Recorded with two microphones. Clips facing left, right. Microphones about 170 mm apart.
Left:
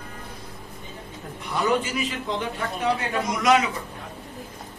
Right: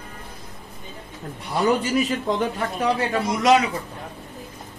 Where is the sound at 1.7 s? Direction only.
40° right (ahead or behind).